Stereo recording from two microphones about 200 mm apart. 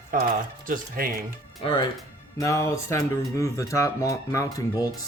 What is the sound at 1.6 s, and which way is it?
Speech, 25° left (ahead or behind).